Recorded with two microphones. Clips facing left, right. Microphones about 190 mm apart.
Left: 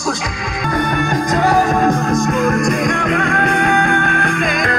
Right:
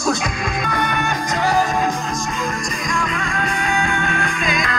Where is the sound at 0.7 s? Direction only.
45° left (ahead or behind).